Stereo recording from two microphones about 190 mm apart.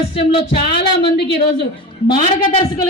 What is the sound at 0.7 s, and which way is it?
Speech, 60° left (ahead or behind).